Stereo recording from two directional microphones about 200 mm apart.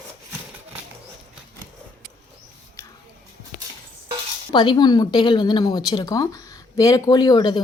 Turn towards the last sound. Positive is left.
turn(degrees=20)  # may be behind; listen again after turning